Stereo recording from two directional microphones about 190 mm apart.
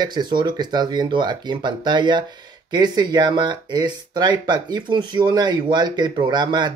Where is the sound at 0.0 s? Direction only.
20° right (ahead or behind).